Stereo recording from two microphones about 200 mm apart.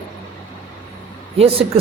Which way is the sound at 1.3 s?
30° right (ahead or behind).